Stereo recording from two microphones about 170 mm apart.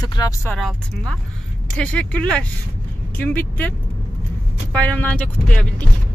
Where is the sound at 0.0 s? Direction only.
25° left (ahead or behind).